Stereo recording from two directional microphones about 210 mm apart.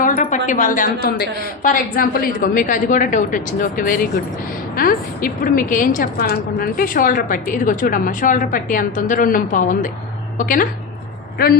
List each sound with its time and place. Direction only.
0.0 s a woman's voice: 35° left (ahead or behind)